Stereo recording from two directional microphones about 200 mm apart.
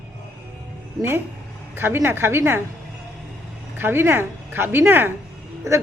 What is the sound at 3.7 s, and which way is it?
Speech, 10° right (ahead or behind).